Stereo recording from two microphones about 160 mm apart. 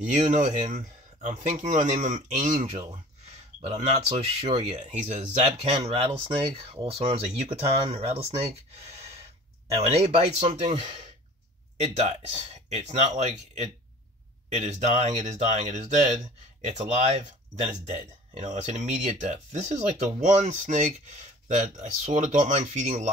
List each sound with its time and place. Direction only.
0.1 s speech: 50° right (ahead or behind)
3.7 s speech: 35° right (ahead or behind)
9.8 s speech: 40° right (ahead or behind)